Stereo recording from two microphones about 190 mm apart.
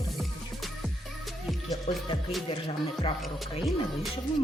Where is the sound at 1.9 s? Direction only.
35° left (ahead or behind).